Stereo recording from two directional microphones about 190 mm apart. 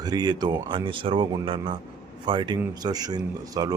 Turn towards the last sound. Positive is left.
turn(degrees=-20)  # may be behind; listen again after turning